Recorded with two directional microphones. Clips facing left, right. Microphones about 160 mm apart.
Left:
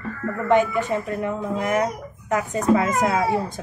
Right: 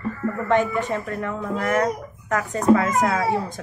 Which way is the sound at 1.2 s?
15° left (ahead or behind).